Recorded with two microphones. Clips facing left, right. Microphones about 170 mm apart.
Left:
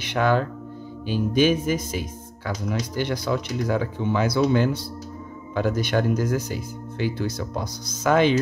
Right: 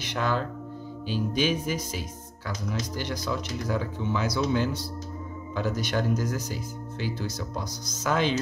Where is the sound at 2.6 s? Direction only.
60° left (ahead or behind).